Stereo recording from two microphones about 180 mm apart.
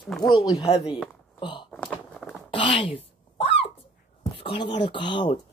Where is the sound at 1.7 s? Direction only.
5° left (ahead or behind).